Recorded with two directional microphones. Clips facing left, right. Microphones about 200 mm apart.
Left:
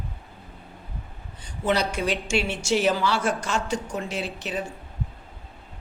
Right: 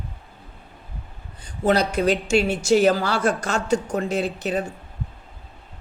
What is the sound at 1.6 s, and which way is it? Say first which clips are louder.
A woman's voice: right 5 dB; 40° right (ahead or behind).